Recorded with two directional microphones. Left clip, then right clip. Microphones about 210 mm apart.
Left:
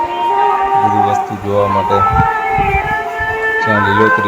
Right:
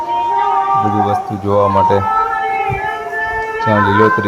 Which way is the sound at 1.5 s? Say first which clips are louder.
Right 1 dB; 10° right (ahead or behind).